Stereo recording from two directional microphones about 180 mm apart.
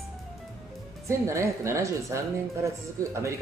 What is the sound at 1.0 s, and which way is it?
Speech, 15° right (ahead or behind).